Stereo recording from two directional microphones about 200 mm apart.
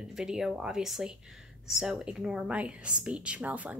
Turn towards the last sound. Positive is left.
turn(degrees=-5)  # may be behind; listen again after turning